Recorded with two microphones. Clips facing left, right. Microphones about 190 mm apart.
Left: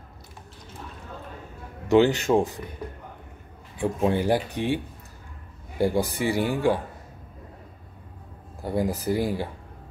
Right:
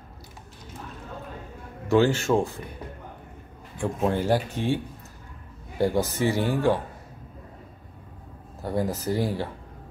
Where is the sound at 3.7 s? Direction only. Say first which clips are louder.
Left 2 dB; 15° left (ahead or behind).